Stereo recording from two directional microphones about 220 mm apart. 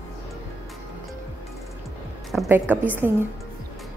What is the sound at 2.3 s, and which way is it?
Speech, 5° right (ahead or behind).